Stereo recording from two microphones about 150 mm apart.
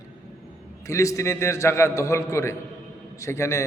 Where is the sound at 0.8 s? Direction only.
20° left (ahead or behind).